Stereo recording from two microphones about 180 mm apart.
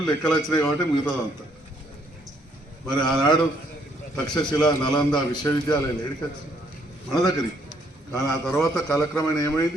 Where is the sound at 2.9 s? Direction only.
5° left (ahead or behind).